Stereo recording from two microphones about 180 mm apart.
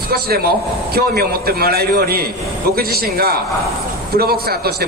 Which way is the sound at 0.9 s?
60° right (ahead or behind).